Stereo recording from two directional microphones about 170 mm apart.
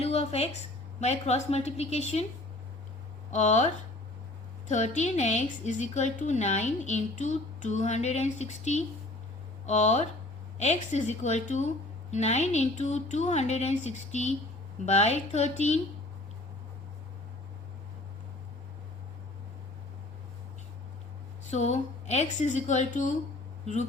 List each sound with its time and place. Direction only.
0.0 s a woman's voice: 40° left (ahead or behind)
3.3 s a woman's voice: 45° left (ahead or behind)
4.7 s a woman's voice: 45° left (ahead or behind)
21.5 s a woman's voice: 40° left (ahead or behind)